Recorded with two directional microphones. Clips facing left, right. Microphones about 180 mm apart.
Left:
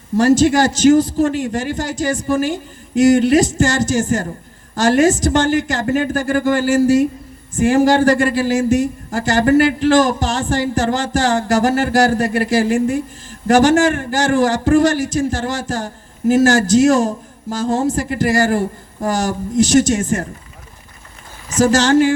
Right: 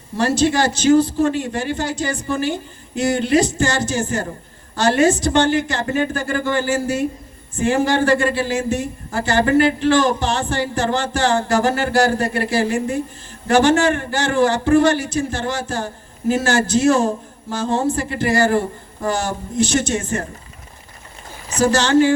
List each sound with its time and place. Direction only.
0.2 s speech: 45° left (ahead or behind)
21.5 s speech: 45° left (ahead or behind)